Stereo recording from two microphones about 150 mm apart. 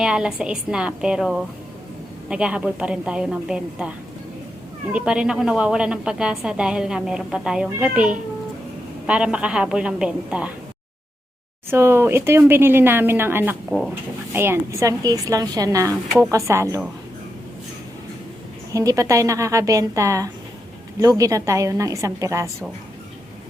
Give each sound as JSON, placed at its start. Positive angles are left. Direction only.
{"t": 0.0, "sound": "a woman's voice", "side_deg": -5}
{"t": 11.7, "sound": "speech", "side_deg": -15}
{"t": 13.7, "sound": "a woman's voice", "side_deg": -5}
{"t": 14.3, "sound": "speech", "side_deg": -15}
{"t": 18.7, "sound": "speech", "side_deg": -20}